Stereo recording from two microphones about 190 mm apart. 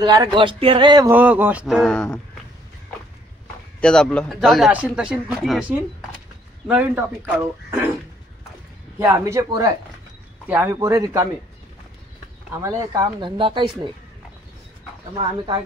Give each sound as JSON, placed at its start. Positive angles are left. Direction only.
{"t": 0.0, "sound": "speech", "side_deg": -20}
{"t": 1.1, "sound": "speech", "side_deg": -10}
{"t": 3.8, "sound": "speech", "side_deg": 5}
{"t": 9.0, "sound": "speech", "side_deg": -15}
{"t": 12.6, "sound": "speech", "side_deg": -20}
{"t": 15.1, "sound": "speech", "side_deg": -25}